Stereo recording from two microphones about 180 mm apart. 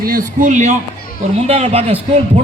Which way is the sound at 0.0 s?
50° right (ahead or behind).